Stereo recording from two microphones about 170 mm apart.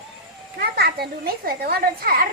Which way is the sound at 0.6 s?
65° right (ahead or behind).